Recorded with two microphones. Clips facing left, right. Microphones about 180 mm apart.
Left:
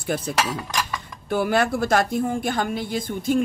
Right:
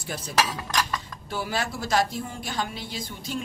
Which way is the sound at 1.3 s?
55° left (ahead or behind).